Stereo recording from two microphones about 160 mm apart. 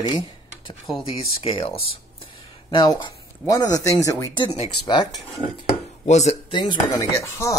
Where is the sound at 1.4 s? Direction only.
35° left (ahead or behind).